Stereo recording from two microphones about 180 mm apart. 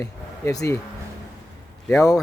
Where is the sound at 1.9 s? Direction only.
15° left (ahead or behind).